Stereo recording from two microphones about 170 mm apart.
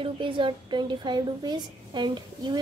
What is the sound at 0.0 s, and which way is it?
A woman's voice, 30° right (ahead or behind).